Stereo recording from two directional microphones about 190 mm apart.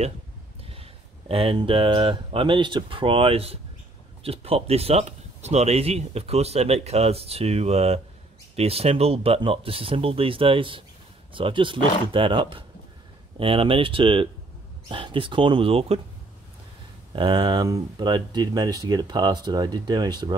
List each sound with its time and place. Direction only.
1.3 s speech: 30° right (ahead or behind)
17.1 s speech: 25° right (ahead or behind)